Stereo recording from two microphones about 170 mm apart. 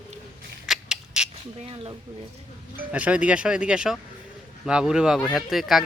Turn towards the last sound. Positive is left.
turn(degrees=0)  # may be behind; listen again after turning